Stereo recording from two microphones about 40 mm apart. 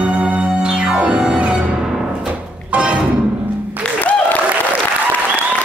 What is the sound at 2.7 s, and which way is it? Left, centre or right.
Music, right.